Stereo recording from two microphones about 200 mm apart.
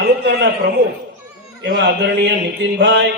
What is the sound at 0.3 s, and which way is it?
A man's voice, 55° right (ahead or behind).